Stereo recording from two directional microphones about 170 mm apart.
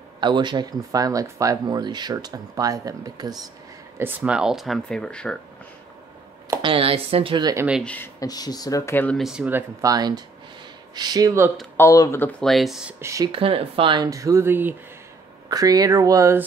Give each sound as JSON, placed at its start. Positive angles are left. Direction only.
{"t": 0.2, "sound": "speech", "side_deg": -25}
{"t": 4.0, "sound": "speech", "side_deg": -10}
{"t": 6.6, "sound": "speech", "side_deg": -35}
{"t": 7.5, "sound": "speech", "side_deg": -10}
{"t": 7.8, "sound": "speech", "side_deg": 10}
{"t": 8.2, "sound": "speech", "side_deg": 20}
{"t": 9.2, "sound": "speech", "side_deg": -5}
{"t": 11.7, "sound": "speech", "side_deg": 15}
{"t": 13.0, "sound": "speech", "side_deg": -20}
{"t": 13.3, "sound": "speech", "side_deg": -35}